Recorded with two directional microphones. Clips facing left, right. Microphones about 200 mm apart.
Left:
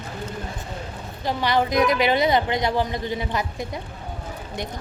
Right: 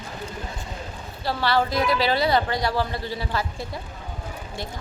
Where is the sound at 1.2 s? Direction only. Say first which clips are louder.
Left 1 dB; 15° left (ahead or behind).